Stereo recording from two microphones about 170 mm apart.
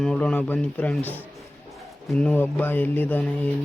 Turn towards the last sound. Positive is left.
turn(degrees=10)  # may be behind; listen again after turning